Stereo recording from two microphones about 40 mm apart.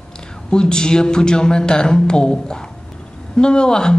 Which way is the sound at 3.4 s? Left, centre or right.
Left.